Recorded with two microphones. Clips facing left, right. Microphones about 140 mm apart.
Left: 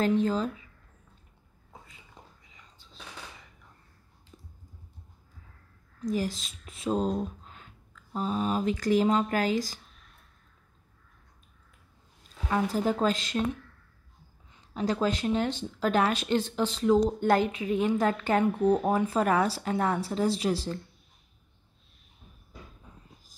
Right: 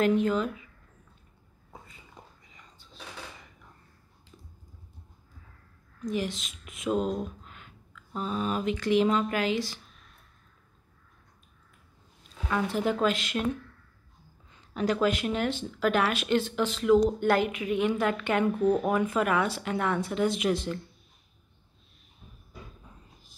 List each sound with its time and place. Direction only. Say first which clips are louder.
0.0 s speech: right 1 dB; 35° left (ahead or behind)
5.9 s speech: left 1 dB; 35° left (ahead or behind)
12.4 s speech: left 1 dB; 35° left (ahead or behind)
14.5 s speech: right 1 dB; 25° left (ahead or behind)